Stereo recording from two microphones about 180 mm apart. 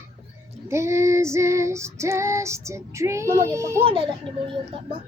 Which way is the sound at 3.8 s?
30° right (ahead or behind).